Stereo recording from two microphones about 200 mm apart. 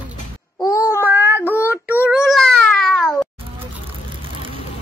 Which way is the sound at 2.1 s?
Centre (ahead or behind).